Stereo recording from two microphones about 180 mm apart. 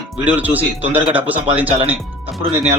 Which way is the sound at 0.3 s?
10° right (ahead or behind).